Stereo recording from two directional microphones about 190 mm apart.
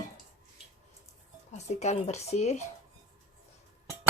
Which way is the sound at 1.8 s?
35° left (ahead or behind).